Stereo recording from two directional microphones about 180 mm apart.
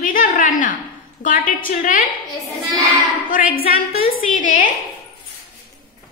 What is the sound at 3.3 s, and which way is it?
Speech, 50° left (ahead or behind).